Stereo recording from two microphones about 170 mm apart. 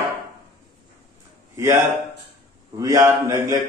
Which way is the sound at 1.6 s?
15° right (ahead or behind).